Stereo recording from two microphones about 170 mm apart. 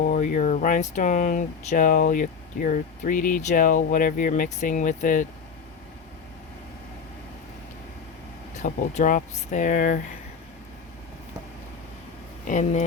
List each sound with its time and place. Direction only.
0.0 s speech: 50° left (ahead or behind)
8.5 s speech: 45° left (ahead or behind)
12.5 s speech: 45° left (ahead or behind)